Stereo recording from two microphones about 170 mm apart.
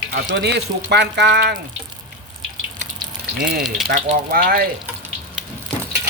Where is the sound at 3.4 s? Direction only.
65° right (ahead or behind).